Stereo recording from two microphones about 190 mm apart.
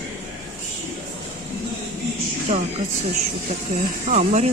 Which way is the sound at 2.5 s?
40° right (ahead or behind).